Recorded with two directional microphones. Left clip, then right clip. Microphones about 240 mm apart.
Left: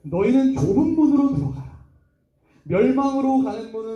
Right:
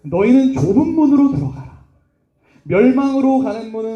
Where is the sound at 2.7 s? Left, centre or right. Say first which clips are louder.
Right 5 dB; right.